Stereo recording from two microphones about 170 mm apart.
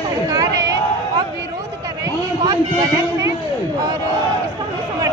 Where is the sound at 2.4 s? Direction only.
25° right (ahead or behind).